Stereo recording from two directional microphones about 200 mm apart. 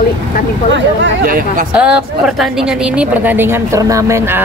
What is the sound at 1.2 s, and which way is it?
Speech, 45° right (ahead or behind).